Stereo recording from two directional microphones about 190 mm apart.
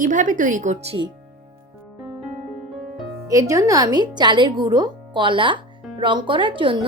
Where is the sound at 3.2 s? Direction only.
15° right (ahead or behind).